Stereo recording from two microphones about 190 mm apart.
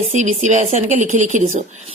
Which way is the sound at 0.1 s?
40° right (ahead or behind).